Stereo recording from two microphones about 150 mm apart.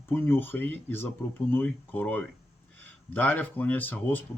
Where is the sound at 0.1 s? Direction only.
15° left (ahead or behind).